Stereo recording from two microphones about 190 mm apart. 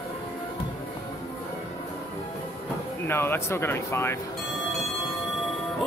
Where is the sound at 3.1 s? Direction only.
15° left (ahead or behind).